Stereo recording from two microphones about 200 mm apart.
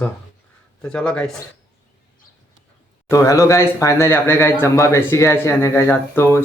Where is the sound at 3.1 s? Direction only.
15° left (ahead or behind).